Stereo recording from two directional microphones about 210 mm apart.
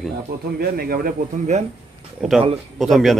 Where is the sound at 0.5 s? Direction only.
45° right (ahead or behind).